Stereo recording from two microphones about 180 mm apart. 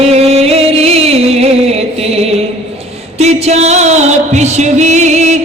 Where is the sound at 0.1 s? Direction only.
35° right (ahead or behind).